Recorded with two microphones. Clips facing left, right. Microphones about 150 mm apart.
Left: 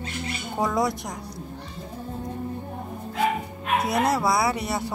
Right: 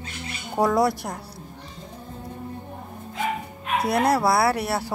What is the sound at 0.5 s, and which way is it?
Speech, centre (ahead or behind).